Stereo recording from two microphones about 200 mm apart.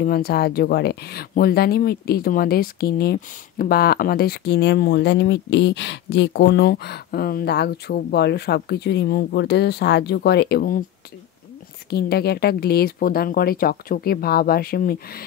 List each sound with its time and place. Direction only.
0.0 s speech: 50° left (ahead or behind)
11.9 s speech: 55° left (ahead or behind)